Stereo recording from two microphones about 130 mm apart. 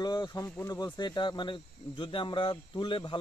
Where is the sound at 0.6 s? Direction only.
30° left (ahead or behind).